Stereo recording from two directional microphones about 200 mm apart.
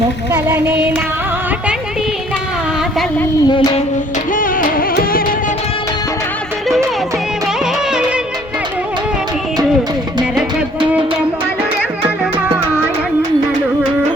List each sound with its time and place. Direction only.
0.3 s music: 10° right (ahead or behind)
3.4 s a sound: 20° left (ahead or behind)
4.4 s music: 45° left (ahead or behind)
7.6 s music: 5° right (ahead or behind)